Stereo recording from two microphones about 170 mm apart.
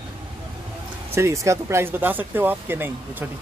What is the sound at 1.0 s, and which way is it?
Speech, 15° right (ahead or behind).